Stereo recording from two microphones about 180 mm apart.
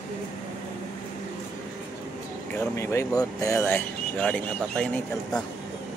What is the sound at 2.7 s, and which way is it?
Speech, 15° left (ahead or behind).